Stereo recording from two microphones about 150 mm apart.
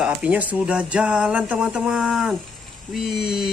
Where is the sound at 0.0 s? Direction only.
10° right (ahead or behind).